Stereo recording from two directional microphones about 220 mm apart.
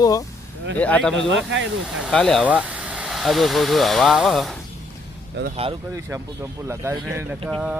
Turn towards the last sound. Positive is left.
turn(degrees=-5)  # may be behind; listen again after turning